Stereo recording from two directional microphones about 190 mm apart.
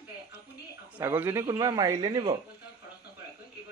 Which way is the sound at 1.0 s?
15° right (ahead or behind).